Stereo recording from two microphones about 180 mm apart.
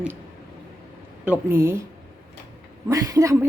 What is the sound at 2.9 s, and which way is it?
Speech, 20° right (ahead or behind).